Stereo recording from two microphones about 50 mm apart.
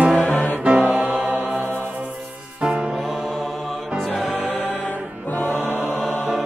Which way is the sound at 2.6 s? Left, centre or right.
Right.